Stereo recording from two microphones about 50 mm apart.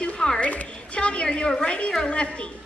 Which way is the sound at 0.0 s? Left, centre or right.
Centre.